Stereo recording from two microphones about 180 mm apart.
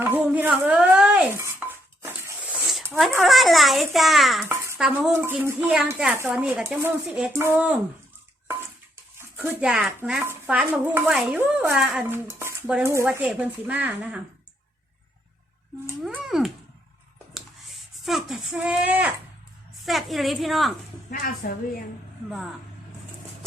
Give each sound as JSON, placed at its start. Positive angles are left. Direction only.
{"t": 0.0, "sound": "dishes", "side_deg": -10}
{"t": 3.0, "sound": "a child's voice", "side_deg": 0}
{"t": 9.1, "sound": "speech", "side_deg": -10}
{"t": 16.0, "sound": "cat", "side_deg": 0}
{"t": 18.0, "sound": "a child's voice", "side_deg": 0}
{"t": 21.1, "sound": "a woman's voice", "side_deg": 50}